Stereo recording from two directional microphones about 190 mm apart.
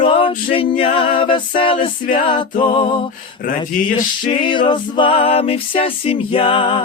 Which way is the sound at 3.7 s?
45° left (ahead or behind).